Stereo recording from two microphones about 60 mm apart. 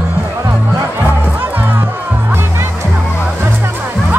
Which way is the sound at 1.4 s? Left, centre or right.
Right.